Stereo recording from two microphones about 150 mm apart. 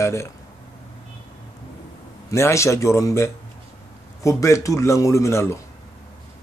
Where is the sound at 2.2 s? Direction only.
20° left (ahead or behind).